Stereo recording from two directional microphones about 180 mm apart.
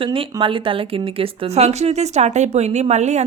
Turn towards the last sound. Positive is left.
turn(degrees=-40)  # may be behind; listen again after turning